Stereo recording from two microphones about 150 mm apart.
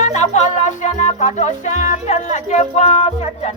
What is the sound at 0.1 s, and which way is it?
Music, 50° left (ahead or behind).